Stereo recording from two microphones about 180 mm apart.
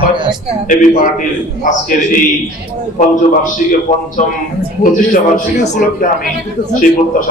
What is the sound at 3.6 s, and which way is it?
Speech, 50° left (ahead or behind).